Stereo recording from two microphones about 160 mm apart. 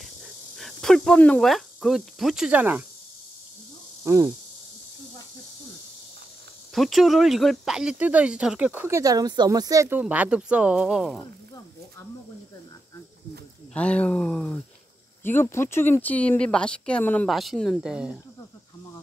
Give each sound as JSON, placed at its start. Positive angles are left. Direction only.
{"t": 0.6, "sound": "speech", "side_deg": 0}
{"t": 4.0, "sound": "speech", "side_deg": -20}
{"t": 6.7, "sound": "speech", "side_deg": 0}
{"t": 13.7, "sound": "speech", "side_deg": 10}
{"t": 17.3, "sound": "speech", "side_deg": 0}